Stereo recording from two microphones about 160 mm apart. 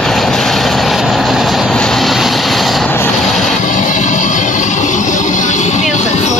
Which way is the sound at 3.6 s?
50° left (ahead or behind).